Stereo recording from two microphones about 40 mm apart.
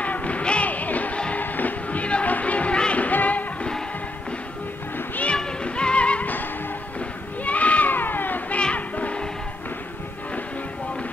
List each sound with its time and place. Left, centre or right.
0.0 s music: left
5.6 s music: left
7.0 s a sound: left
7.9 s cat: left
8.7 s music: left